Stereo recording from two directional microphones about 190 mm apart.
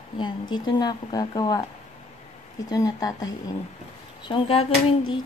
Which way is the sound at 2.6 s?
20° left (ahead or behind).